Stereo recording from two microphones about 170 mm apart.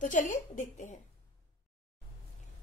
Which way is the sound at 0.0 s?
50° left (ahead or behind).